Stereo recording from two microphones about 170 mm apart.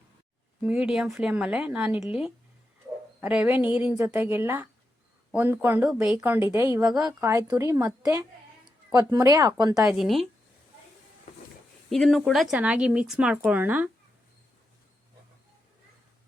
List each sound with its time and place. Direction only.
0.6 s speech: 5° right (ahead or behind); by 9.9 s 25° right (ahead or behind)
9.9 s speech: centre (ahead or behind)
11.9 s speech: centre (ahead or behind)